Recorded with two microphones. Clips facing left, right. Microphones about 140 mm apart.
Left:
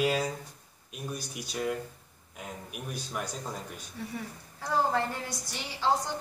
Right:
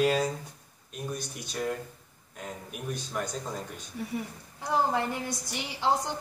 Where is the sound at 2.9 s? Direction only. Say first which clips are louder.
Right 3 dB; 5° left (ahead or behind).